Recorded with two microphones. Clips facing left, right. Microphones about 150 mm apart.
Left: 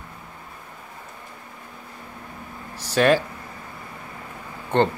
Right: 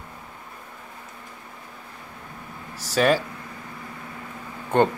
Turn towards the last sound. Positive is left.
turn(degrees=-10)  # may be behind; listen again after turning